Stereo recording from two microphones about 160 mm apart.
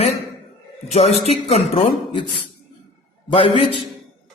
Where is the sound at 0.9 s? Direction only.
40° left (ahead or behind).